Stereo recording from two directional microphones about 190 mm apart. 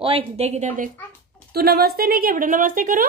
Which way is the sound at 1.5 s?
55° right (ahead or behind).